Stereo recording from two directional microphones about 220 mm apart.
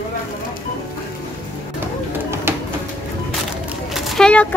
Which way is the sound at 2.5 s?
10° right (ahead or behind).